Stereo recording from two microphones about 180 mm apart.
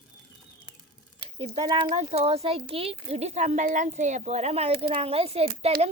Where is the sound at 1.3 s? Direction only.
30° right (ahead or behind).